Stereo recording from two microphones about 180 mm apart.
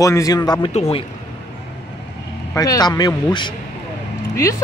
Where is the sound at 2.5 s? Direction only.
20° left (ahead or behind).